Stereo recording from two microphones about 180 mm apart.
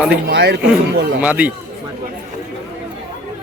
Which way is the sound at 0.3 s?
75° right (ahead or behind).